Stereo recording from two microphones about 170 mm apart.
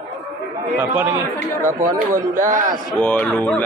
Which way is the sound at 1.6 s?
50° right (ahead or behind).